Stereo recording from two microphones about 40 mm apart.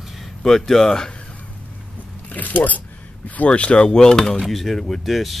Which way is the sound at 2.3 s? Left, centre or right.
Left.